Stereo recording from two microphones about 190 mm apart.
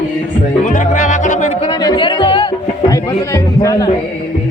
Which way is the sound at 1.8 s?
25° left (ahead or behind).